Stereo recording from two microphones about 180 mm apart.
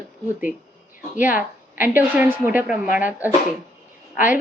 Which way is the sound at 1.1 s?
45° left (ahead or behind).